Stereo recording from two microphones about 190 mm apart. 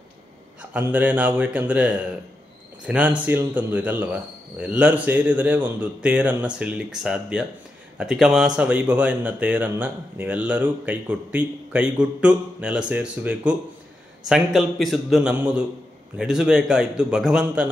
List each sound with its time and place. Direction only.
0.6 s a man's voice: 10° right (ahead or behind)